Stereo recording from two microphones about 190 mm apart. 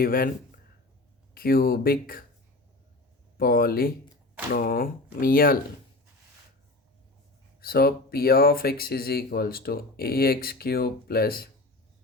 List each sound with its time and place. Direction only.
0.0 s speech: 50° left (ahead or behind)
3.3 s speech: 50° left (ahead or behind)
7.6 s speech: 55° left (ahead or behind)